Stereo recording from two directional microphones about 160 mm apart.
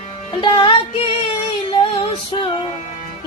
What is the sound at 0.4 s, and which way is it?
Music, 30° left (ahead or behind).